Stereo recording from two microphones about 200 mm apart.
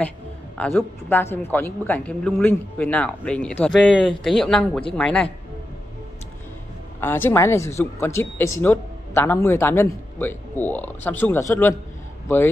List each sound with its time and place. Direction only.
0.6 s speech: 10° left (ahead or behind)
7.0 s speech: 10° left (ahead or behind)